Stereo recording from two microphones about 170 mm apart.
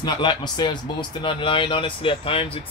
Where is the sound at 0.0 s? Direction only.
25° left (ahead or behind).